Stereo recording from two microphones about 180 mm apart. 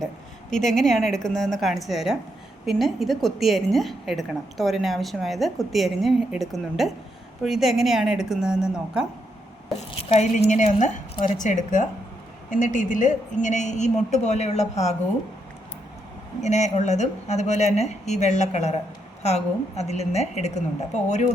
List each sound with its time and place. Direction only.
0.5 s a woman's voice: centre (ahead or behind)
9.9 s a woman's voice: 30° left (ahead or behind)
16.4 s a woman's voice: 40° left (ahead or behind)